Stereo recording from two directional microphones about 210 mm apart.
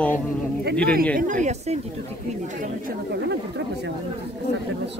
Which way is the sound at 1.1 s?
35° right (ahead or behind).